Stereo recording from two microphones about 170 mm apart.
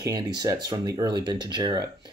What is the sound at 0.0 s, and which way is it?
Speech, 25° right (ahead or behind).